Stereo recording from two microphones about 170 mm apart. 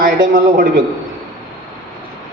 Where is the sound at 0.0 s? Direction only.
55° right (ahead or behind).